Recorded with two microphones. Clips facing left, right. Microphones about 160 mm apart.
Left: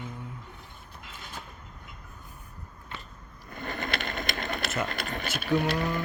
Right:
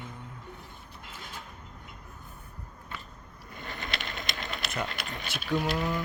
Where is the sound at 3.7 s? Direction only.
55° left (ahead or behind).